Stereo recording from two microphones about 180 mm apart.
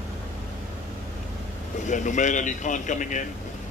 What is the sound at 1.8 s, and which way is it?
Speech, 45° left (ahead or behind).